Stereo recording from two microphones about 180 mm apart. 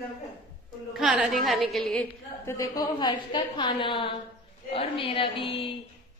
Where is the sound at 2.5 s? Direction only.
20° left (ahead or behind).